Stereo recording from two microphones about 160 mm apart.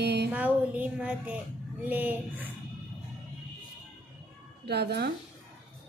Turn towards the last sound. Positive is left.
turn(degrees=-90)